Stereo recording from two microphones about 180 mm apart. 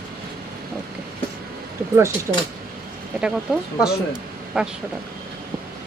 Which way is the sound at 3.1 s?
5° right (ahead or behind).